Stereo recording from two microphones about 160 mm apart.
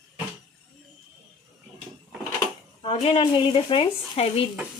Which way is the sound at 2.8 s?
35° left (ahead or behind).